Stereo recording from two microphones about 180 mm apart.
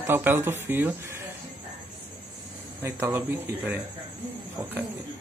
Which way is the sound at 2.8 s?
10° right (ahead or behind).